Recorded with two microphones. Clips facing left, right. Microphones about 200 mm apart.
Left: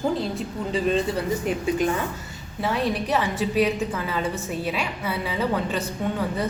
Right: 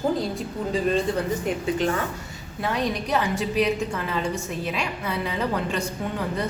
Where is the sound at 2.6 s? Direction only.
5° left (ahead or behind).